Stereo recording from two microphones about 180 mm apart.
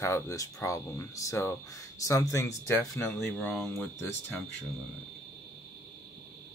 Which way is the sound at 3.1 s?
5° left (ahead or behind).